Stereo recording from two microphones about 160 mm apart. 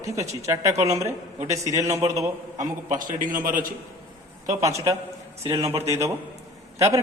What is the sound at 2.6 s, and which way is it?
A man's voice, 55° right (ahead or behind).